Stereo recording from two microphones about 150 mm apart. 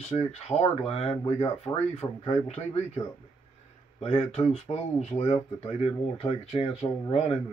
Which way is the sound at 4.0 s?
45° left (ahead or behind).